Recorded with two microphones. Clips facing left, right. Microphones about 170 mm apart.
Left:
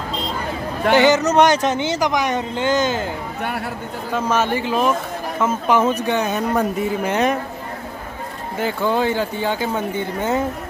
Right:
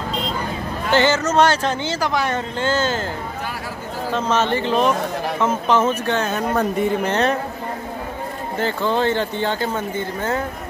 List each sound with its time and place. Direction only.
0.9 s speech: 15° left (ahead or behind)
4.1 s speech: 10° left (ahead or behind)
8.5 s speech: 10° left (ahead or behind)